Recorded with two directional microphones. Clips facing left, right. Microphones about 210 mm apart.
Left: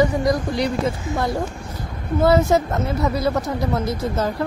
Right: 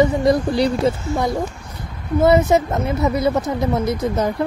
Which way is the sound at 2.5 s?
20° right (ahead or behind).